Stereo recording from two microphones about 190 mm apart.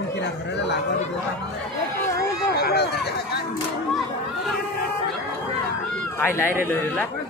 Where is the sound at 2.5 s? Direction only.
60° left (ahead or behind).